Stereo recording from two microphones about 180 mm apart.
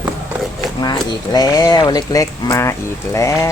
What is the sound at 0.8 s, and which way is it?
Speech, 20° left (ahead or behind).